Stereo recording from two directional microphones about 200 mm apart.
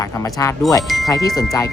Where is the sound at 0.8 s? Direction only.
Centre (ahead or behind).